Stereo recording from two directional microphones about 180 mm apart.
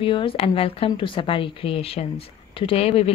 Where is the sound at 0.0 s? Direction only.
30° left (ahead or behind).